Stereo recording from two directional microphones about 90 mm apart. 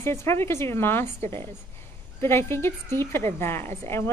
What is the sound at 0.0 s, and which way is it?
A woman's voice, 30° left (ahead or behind).